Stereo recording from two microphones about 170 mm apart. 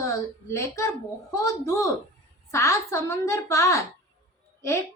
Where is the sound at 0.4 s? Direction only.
15° left (ahead or behind).